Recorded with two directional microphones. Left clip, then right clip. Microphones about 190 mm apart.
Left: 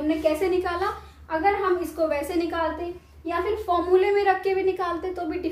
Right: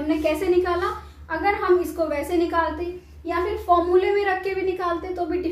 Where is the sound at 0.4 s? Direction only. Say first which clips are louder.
Right 3 dB; 20° left (ahead or behind).